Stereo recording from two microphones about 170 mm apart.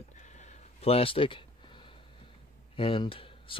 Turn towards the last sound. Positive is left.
turn(degrees=30)  # may be behind; listen again after turning